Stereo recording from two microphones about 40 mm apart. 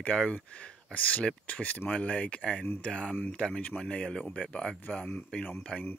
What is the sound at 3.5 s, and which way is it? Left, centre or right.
Speech, left.